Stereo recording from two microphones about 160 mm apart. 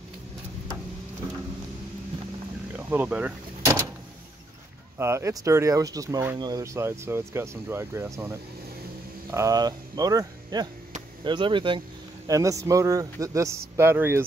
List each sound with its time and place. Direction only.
2.7 s door: 10° right (ahead or behind)
4.9 s speech: 15° right (ahead or behind); by 11.8 s 30° right (ahead or behind)
12.3 s speech: 20° right (ahead or behind)